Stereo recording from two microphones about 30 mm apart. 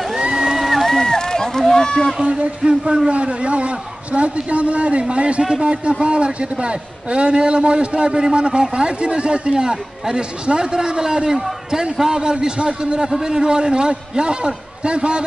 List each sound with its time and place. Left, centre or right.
0.4 s music: centre
0.8 s a sound: centre
1.1 s run: left
2.2 s a man's voice: right
9.5 s a man's voice: right